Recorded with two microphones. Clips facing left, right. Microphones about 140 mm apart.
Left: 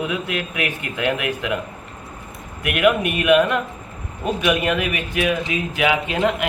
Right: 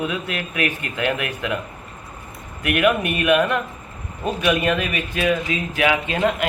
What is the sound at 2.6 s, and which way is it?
A man's voice, 15° left (ahead or behind).